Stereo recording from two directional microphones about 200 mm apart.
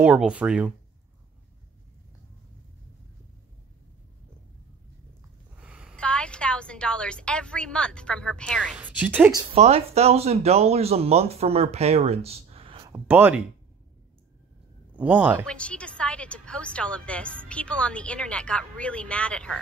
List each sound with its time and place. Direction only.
0.0 s a woman's voice: 5° right (ahead or behind)
5.6 s a woman's voice: 5° right (ahead or behind)
8.7 s a woman's voice: 10° right (ahead or behind)
9.6 s speech: 30° right (ahead or behind)
12.9 s a woman's voice: 10° right (ahead or behind)
15.0 s a woman's voice: 5° right (ahead or behind)
15.4 s a woman's voice: 5° left (ahead or behind)